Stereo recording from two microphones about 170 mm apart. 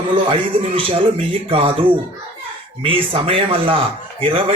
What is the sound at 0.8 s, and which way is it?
A man's voice, 30° right (ahead or behind).